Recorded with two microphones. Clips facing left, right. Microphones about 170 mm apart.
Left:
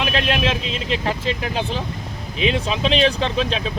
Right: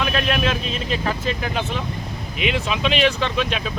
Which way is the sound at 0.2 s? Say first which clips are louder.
Left 1 dB; 25° left (ahead or behind).